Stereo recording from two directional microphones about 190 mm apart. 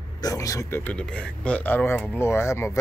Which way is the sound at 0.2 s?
20° left (ahead or behind).